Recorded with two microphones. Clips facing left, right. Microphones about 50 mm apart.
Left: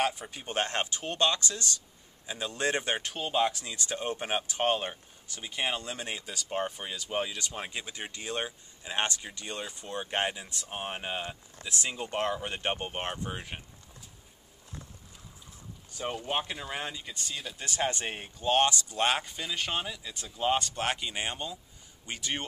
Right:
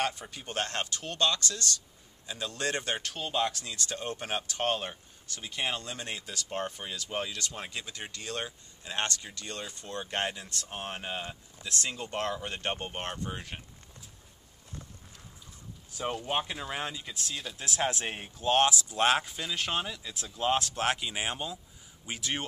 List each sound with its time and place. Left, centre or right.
0.0 s speech: centre
15.9 s speech: centre